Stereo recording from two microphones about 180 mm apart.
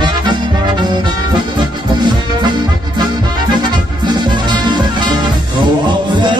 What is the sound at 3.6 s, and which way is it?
Music, 25° right (ahead or behind).